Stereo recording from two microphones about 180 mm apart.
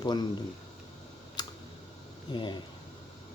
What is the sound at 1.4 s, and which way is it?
Typing, 25° left (ahead or behind).